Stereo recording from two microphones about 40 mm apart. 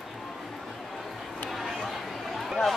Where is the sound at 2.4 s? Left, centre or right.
Centre.